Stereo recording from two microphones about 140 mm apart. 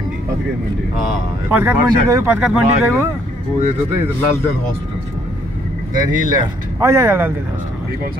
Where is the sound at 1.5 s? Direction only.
15° right (ahead or behind).